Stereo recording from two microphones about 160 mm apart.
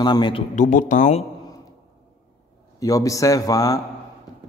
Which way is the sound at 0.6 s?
55° left (ahead or behind).